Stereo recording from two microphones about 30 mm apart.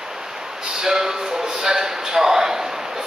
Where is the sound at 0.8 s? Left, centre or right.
Centre.